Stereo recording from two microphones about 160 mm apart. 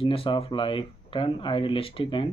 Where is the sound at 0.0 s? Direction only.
35° left (ahead or behind).